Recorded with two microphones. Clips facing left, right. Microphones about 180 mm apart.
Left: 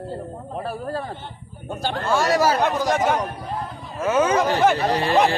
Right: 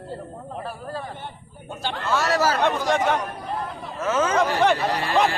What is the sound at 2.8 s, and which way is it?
Speech, 40° left (ahead or behind).